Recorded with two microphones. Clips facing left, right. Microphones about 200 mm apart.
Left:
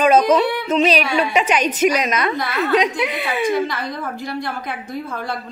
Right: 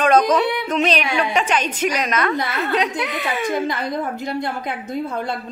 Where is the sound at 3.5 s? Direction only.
50° right (ahead or behind).